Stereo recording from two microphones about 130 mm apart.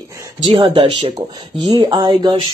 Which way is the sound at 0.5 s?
45° right (ahead or behind).